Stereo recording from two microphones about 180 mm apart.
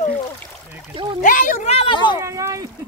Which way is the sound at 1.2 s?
50° left (ahead or behind).